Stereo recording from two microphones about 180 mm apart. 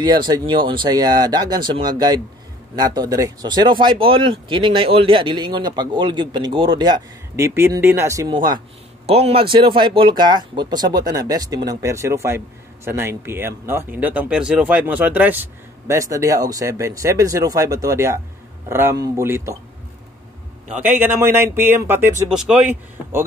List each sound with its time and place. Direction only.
0.0 s speech: 25° right (ahead or behind)
20.8 s speech: 10° right (ahead or behind)